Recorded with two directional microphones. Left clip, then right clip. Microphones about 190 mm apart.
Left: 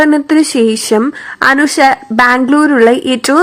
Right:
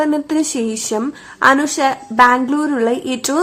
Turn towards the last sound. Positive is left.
turn(degrees=20)  # may be behind; listen again after turning